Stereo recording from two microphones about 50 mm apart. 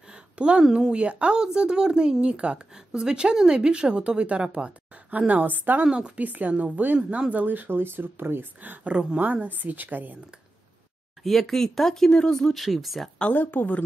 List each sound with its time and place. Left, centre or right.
0.1 s a sound: centre
0.7 s a woman's voice: right
5.9 s a woman's voice: right
6.2 s a woman's voice: right
8.5 s a woman's voice: right
11.2 s speech: centre
13.2 s speech: left